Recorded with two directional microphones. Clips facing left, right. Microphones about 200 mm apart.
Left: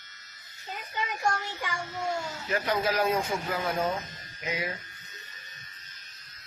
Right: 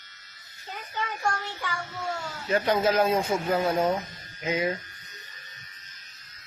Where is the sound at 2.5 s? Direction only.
25° right (ahead or behind).